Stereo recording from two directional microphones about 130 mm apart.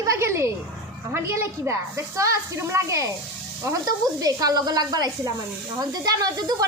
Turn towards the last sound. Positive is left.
turn(degrees=-30)  # may be behind; listen again after turning